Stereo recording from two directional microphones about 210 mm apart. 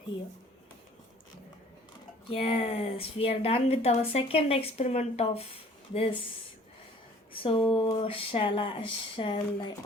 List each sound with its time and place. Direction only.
2.3 s speech: 25° left (ahead or behind)
7.4 s speech: 25° left (ahead or behind)